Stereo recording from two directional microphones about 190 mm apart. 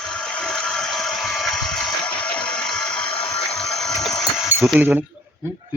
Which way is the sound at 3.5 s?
Centre (ahead or behind).